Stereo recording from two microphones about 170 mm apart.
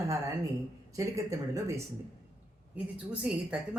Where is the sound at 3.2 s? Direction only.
5° right (ahead or behind).